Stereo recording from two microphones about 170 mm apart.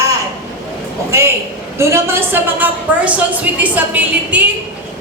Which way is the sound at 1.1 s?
15° right (ahead or behind).